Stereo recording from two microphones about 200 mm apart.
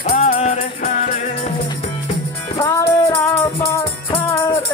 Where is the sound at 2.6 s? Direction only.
15° left (ahead or behind).